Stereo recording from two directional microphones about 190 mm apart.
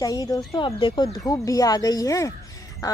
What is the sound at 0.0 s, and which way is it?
Speech, 20° left (ahead or behind).